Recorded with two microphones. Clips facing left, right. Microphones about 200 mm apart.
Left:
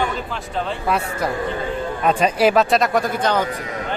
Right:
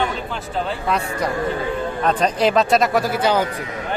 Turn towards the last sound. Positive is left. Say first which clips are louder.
# right 1 dB
turn(degrees=-5)  # may be behind; listen again after turning